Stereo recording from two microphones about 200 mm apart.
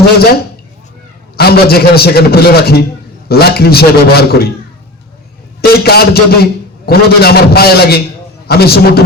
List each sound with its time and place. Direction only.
1.4 s a man's voice: 50° left (ahead or behind)
5.6 s a man's voice: 50° left (ahead or behind)